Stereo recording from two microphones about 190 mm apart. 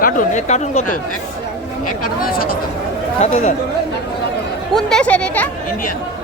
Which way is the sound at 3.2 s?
35° left (ahead or behind).